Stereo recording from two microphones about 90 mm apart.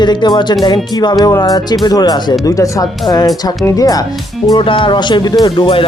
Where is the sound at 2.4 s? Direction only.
40° left (ahead or behind).